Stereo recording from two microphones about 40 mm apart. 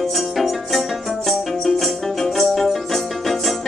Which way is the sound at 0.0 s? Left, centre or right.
Centre.